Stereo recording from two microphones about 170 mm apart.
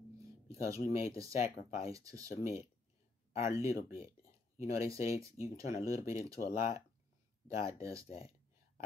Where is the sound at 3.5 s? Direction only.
20° right (ahead or behind).